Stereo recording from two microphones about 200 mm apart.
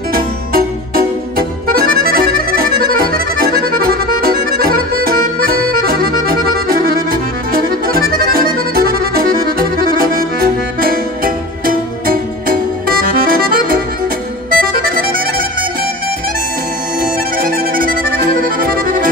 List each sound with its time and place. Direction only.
0.1 s music: 45° right (ahead or behind)
1.7 s accordion: 45° right (ahead or behind)
14.5 s music: 45° right (ahead or behind)
17.0 s music: 45° right (ahead or behind)